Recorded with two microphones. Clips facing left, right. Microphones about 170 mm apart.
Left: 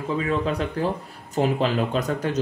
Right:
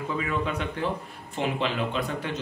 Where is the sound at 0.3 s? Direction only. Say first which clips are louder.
Left 5 dB; 35° left (ahead or behind).